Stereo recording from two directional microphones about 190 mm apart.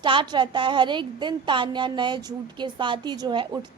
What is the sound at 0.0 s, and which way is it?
A woman's voice, 25° right (ahead or behind).